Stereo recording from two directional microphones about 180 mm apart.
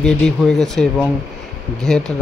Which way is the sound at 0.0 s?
5° left (ahead or behind).